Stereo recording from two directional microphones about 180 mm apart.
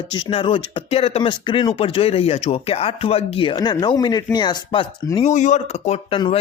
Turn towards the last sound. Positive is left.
turn(degrees=35)  # may be behind; listen again after turning